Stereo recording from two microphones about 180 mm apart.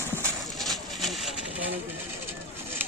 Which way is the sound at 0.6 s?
Centre (ahead or behind).